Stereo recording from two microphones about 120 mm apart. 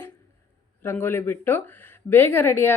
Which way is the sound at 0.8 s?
20° left (ahead or behind).